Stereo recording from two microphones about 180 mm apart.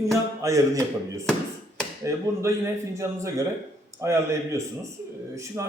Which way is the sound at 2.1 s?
15° right (ahead or behind).